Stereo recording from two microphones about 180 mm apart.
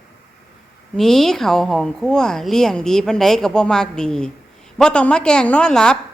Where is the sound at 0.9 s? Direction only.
Centre (ahead or behind).